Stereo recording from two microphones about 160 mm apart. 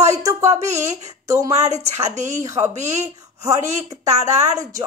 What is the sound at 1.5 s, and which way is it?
Speech, 45° right (ahead or behind).